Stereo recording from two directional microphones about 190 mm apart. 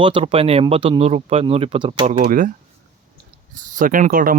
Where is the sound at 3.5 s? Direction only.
45° right (ahead or behind).